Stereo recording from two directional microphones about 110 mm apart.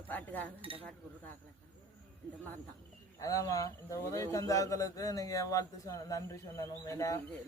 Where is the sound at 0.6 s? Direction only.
55° right (ahead or behind).